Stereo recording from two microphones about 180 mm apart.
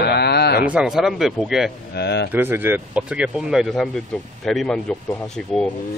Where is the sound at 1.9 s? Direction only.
70° left (ahead or behind).